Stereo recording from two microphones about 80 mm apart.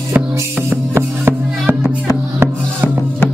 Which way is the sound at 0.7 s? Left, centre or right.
Right.